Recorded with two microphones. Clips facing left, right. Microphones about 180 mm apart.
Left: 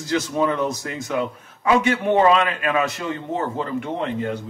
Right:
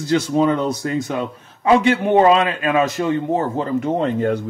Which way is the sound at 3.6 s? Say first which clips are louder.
Right 6 dB; 40° right (ahead or behind).